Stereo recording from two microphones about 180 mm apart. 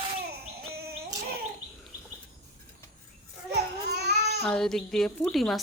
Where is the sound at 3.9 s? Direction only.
65° right (ahead or behind).